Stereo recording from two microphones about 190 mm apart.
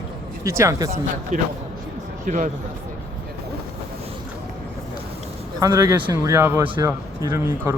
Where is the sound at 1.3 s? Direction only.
40° right (ahead or behind).